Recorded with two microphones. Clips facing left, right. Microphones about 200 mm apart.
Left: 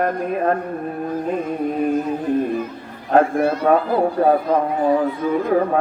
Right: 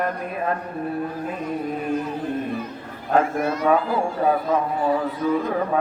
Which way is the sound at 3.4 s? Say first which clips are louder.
Left 5 dB; 30° left (ahead or behind).